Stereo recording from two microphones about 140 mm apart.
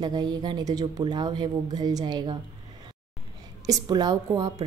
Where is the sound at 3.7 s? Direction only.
30° right (ahead or behind).